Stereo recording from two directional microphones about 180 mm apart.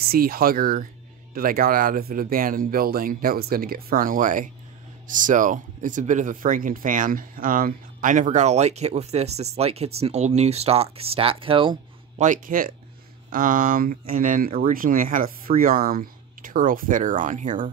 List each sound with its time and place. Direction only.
0.0 s speech: 55° right (ahead or behind); by 11.8 s 30° right (ahead or behind)
12.2 s speech: 45° right (ahead or behind)